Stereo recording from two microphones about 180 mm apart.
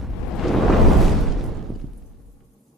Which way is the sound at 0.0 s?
Centre (ahead or behind).